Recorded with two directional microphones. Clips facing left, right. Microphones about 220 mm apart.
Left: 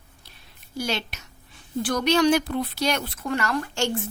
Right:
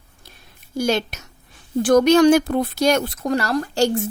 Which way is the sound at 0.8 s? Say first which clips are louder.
Right 8 dB; 45° right (ahead or behind).